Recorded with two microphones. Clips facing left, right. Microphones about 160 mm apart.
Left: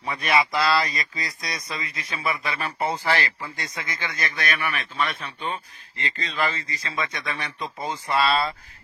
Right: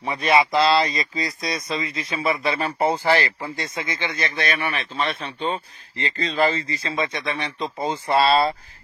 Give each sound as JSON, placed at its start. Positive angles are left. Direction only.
{"t": 0.0, "sound": "speech", "side_deg": -25}